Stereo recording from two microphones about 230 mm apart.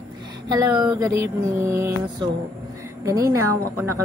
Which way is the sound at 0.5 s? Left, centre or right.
Centre.